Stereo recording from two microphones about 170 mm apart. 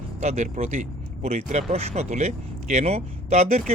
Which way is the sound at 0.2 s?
40° right (ahead or behind).